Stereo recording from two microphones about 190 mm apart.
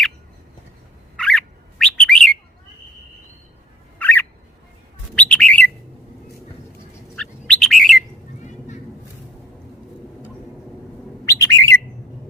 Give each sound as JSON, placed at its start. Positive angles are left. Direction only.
{"t": 1.1, "sound": "bird", "side_deg": 5}
{"t": 3.9, "sound": "fowl", "side_deg": 10}
{"t": 5.1, "sound": "bird", "side_deg": 5}
{"t": 7.2, "sound": "bird", "side_deg": 5}
{"t": 8.4, "sound": "a sound", "side_deg": 40}
{"t": 11.3, "sound": "bird", "side_deg": 15}